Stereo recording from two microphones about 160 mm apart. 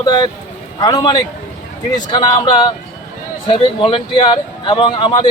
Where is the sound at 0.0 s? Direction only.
25° left (ahead or behind).